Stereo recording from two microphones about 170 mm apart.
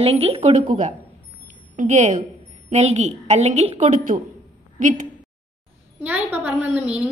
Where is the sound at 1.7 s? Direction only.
45° right (ahead or behind).